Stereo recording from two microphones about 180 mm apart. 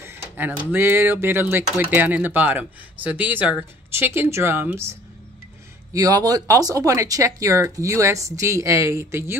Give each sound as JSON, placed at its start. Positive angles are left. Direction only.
{"t": 0.0, "sound": "speech", "side_deg": -15}
{"t": 5.9, "sound": "speech", "side_deg": -20}